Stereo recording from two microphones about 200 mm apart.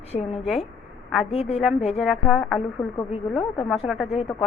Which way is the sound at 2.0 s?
Centre (ahead or behind).